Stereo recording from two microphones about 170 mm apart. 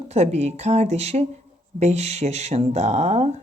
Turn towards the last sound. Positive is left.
turn(degrees=-40)  # may be behind; listen again after turning